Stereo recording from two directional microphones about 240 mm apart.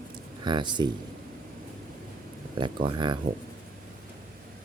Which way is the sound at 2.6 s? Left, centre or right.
Centre.